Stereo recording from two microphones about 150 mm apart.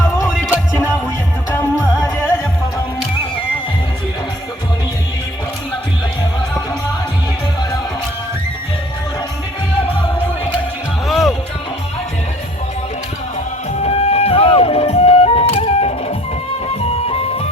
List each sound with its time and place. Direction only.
11.1 s music: centre (ahead or behind)
13.8 s music: 45° left (ahead or behind)